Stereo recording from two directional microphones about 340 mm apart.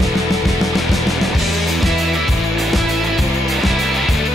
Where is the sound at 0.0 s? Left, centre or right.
Centre.